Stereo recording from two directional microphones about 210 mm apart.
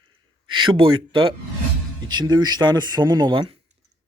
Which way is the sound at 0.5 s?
25° right (ahead or behind).